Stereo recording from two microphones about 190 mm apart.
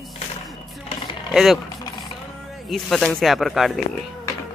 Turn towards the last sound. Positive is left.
turn(degrees=0)  # may be behind; listen again after turning